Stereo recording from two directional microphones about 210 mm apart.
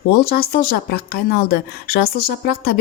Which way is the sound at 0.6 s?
45° left (ahead or behind).